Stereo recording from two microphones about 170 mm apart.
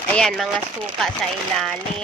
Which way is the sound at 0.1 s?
5° left (ahead or behind).